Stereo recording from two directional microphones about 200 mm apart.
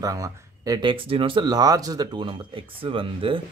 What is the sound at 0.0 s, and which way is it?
Speech, 15° right (ahead or behind).